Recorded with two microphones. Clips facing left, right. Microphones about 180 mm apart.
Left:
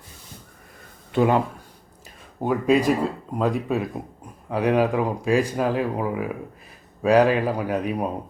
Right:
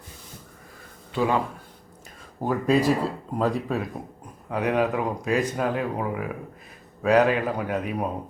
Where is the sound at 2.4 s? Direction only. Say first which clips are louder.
Left 3 dB; 20° left (ahead or behind).